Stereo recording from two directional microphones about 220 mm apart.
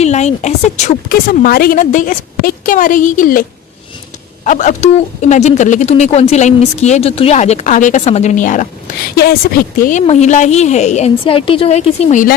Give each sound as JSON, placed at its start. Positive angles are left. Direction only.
{"t": 0.0, "sound": "speech", "side_deg": 30}
{"t": 4.4, "sound": "speech", "side_deg": 35}